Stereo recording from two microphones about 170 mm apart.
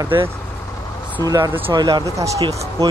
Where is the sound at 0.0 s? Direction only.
20° right (ahead or behind).